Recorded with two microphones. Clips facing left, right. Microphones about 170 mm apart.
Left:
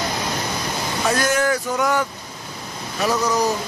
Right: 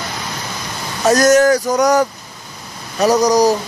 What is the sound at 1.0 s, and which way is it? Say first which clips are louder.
Speech: right 10 dB; 40° right (ahead or behind).